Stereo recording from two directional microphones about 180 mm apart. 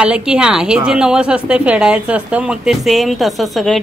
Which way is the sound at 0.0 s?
5° right (ahead or behind).